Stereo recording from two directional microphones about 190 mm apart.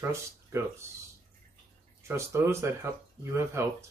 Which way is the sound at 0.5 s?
15° right (ahead or behind).